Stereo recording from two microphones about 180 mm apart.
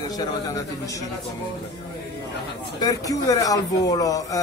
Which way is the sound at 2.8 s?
20° left (ahead or behind).